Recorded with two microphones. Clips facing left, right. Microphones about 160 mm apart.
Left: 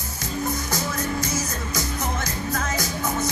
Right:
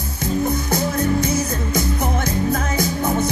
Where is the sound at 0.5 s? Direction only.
60° right (ahead or behind).